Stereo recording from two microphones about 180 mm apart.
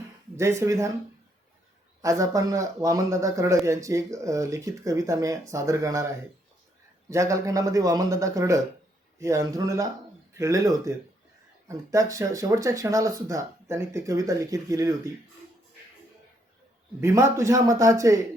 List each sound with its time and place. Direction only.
0.3 s speech: 15° right (ahead or behind)
2.0 s speech: 20° right (ahead or behind)
7.1 s speech: 15° right (ahead or behind)
17.0 s speech: 15° right (ahead or behind)